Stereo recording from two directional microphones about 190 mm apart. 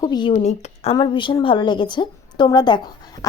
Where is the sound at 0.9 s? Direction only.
25° left (ahead or behind).